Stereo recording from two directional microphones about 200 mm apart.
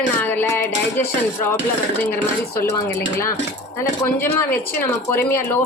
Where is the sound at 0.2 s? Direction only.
10° left (ahead or behind).